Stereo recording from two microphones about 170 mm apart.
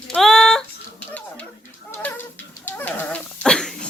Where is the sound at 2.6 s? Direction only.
10° left (ahead or behind).